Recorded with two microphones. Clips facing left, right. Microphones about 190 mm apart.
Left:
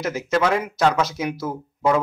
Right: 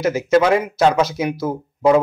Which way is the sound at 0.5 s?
5° right (ahead or behind).